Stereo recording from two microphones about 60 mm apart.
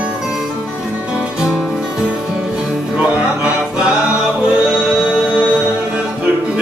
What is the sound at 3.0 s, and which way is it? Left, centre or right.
Music, centre.